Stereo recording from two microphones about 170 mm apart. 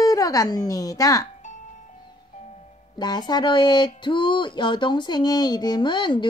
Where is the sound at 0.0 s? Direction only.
20° left (ahead or behind).